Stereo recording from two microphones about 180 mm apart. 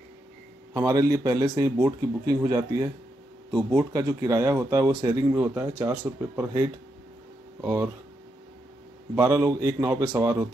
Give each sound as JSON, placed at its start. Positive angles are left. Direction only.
{"t": 0.7, "sound": "a man's voice", "side_deg": -20}
{"t": 9.1, "sound": "speech", "side_deg": -15}